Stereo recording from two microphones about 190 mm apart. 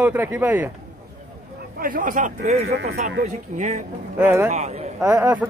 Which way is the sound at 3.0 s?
40° right (ahead or behind).